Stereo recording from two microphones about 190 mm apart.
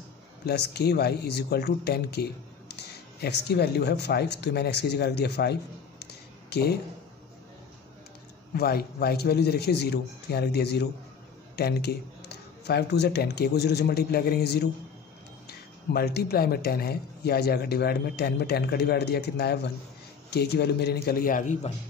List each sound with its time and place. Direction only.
0.5 s speech: 60° left (ahead or behind)
8.5 s speech: 55° left (ahead or behind)